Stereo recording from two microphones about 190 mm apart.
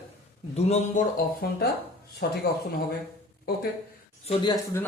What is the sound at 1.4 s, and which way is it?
Speech, 55° left (ahead or behind).